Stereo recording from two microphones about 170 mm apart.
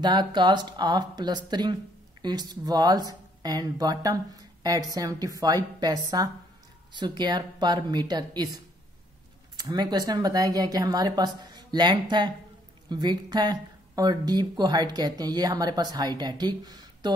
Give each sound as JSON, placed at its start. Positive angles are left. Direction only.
{"t": 0.0, "sound": "speech", "side_deg": -25}
{"t": 9.6, "sound": "speech", "side_deg": -25}